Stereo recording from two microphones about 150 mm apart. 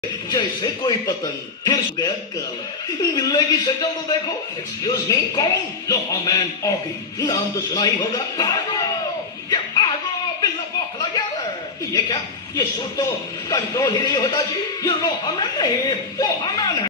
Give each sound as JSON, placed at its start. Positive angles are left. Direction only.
{"t": 0.3, "sound": "a man's voice", "side_deg": 30}
{"t": 9.5, "sound": "music", "side_deg": 30}
{"t": 11.9, "sound": "a man's voice", "side_deg": 25}